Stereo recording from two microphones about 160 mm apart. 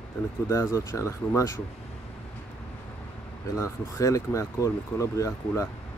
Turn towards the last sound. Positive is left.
turn(degrees=20)  # may be behind; listen again after turning